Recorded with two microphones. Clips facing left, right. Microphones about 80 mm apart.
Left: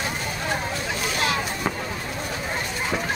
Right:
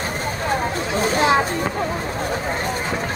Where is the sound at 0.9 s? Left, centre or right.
Right.